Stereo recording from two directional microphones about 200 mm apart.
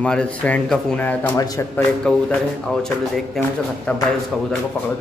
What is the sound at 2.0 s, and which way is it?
Speech, 5° left (ahead or behind).